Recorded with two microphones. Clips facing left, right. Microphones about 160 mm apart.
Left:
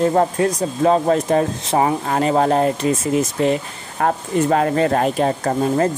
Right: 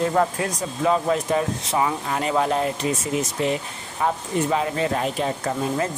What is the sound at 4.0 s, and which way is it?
Speech, 55° left (ahead or behind).